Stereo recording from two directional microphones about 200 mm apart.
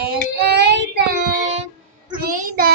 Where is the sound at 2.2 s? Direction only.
45° right (ahead or behind).